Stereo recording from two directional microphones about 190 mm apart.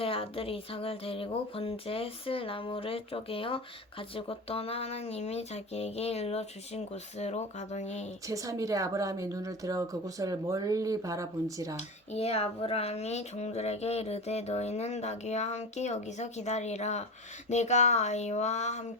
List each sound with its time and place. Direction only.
0.0 s speech: 30° left (ahead or behind)
8.3 s speech: 15° right (ahead or behind)
11.8 s speech: 35° left (ahead or behind)